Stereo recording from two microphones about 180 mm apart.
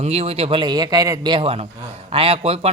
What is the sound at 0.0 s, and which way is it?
A man's voice, 35° right (ahead or behind).